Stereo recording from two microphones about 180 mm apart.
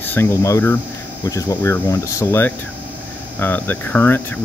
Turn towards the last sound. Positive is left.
turn(degrees=10)  # may be behind; listen again after turning